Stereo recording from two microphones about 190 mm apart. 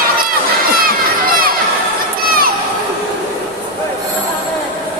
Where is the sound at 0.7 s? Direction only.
50° right (ahead or behind).